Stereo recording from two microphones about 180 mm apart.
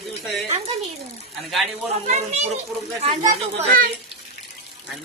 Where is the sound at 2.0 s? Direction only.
40° right (ahead or behind).